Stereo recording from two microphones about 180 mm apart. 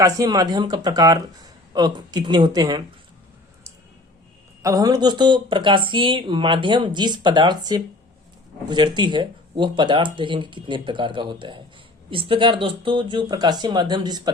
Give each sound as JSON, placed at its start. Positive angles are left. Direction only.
{"t": 0.0, "sound": "speech", "side_deg": -20}
{"t": 4.6, "sound": "speech", "side_deg": -20}